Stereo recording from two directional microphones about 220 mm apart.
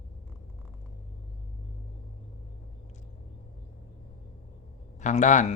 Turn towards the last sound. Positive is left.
turn(degrees=35)  # may be behind; listen again after turning